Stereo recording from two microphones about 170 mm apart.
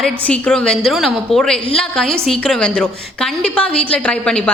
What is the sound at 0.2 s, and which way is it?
A woman's voice, 5° left (ahead or behind).